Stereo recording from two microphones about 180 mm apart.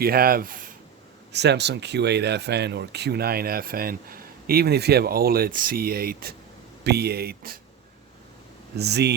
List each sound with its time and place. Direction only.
0.0 s speech: 55° right (ahead or behind)
1.3 s speech: 70° right (ahead or behind)
8.7 s speech: 65° right (ahead or behind)